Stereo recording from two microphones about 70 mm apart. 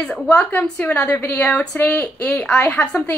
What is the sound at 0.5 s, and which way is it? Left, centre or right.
A woman's voice, centre.